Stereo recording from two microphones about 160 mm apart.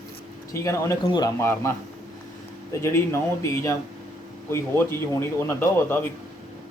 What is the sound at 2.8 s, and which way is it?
Speech, 15° left (ahead or behind).